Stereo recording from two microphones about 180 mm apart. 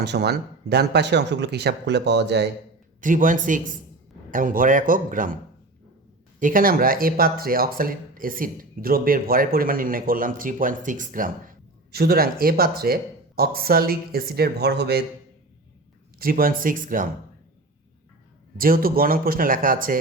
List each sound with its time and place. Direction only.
0.0 s speech: 65° right (ahead or behind)
3.0 s speech: 50° right (ahead or behind)
6.4 s speech: 50° right (ahead or behind)
16.1 s speech: 55° right (ahead or behind)
18.5 s speech: 50° right (ahead or behind)